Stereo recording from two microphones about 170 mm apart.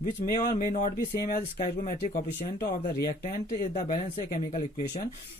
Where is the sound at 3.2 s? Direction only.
45° left (ahead or behind).